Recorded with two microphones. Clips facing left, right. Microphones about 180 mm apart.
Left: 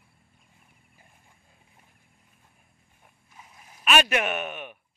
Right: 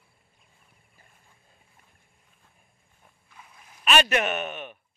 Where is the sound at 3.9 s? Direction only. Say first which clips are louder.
Even; 5° left (ahead or behind).